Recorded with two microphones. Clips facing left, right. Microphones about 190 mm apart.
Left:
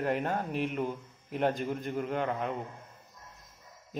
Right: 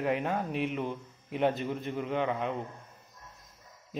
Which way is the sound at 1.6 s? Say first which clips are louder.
Even; 45° left (ahead or behind).